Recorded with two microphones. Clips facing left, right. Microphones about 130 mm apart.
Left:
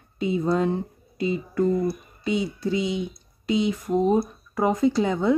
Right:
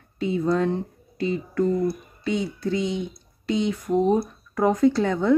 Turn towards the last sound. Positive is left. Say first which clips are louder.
# right 1 dB
turn(degrees=5)  # may be behind; listen again after turning